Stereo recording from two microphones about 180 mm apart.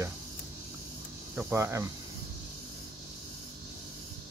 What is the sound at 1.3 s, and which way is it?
Speech, 10° right (ahead or behind).